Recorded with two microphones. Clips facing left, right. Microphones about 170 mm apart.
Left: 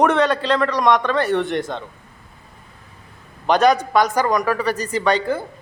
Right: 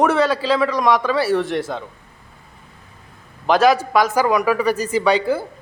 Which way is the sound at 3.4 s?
Centre (ahead or behind).